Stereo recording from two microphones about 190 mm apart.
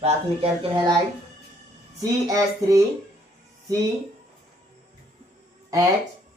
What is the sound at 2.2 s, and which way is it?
Speech, 20° right (ahead or behind).